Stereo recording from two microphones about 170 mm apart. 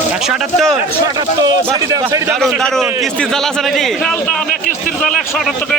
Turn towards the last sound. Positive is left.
turn(degrees=5)  # may be behind; listen again after turning